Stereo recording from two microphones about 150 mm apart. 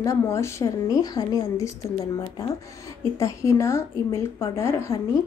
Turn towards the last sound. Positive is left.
turn(degrees=20)  # may be behind; listen again after turning